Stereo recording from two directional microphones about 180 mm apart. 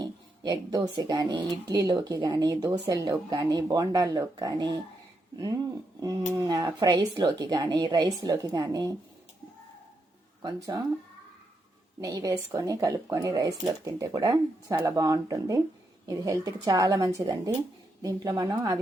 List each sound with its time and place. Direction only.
0.0 s a woman's voice: 20° right (ahead or behind)
6.3 s a woman's voice: 20° right (ahead or behind)
10.4 s a woman's voice: 20° right (ahead or behind)
11.9 s a woman's voice: 20° right (ahead or behind)